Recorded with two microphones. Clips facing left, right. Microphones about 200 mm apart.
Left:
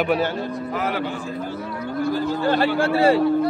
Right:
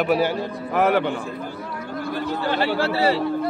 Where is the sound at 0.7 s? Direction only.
65° right (ahead or behind).